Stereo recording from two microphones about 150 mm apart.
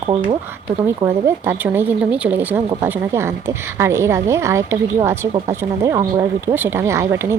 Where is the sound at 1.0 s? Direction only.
15° right (ahead or behind).